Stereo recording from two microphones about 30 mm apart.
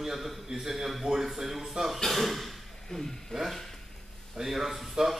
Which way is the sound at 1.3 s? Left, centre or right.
Centre.